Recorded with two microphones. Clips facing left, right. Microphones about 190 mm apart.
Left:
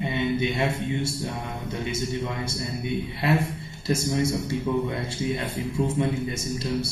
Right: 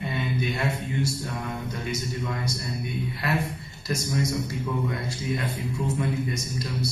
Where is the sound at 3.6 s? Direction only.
30° left (ahead or behind).